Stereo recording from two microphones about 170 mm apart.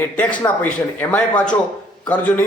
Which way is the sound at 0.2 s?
10° left (ahead or behind).